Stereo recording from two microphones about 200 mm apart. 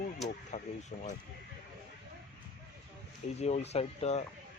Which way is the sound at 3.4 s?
35° left (ahead or behind).